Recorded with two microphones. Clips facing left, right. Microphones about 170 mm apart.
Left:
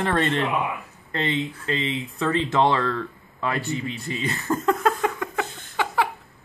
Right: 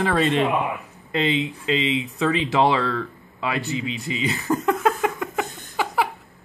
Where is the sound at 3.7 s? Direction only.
90° right.